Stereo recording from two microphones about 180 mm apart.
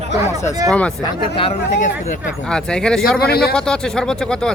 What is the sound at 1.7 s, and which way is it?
Speech, 45° left (ahead or behind).